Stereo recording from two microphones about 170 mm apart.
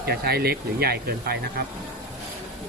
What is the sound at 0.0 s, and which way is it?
Speech, 70° right (ahead or behind).